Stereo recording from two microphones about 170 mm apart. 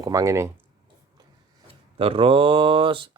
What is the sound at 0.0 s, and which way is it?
Speech, 20° right (ahead or behind).